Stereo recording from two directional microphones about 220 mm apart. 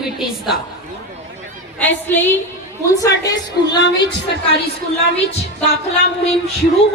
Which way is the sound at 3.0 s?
15° left (ahead or behind).